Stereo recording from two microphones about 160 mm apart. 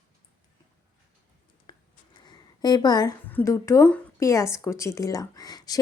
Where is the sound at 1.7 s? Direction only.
30° left (ahead or behind).